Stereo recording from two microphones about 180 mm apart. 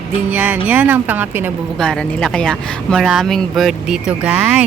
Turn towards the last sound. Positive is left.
turn(degrees=-5)  # may be behind; listen again after turning